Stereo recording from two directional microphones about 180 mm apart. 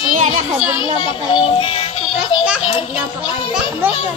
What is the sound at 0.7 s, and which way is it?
Music, 25° left (ahead or behind).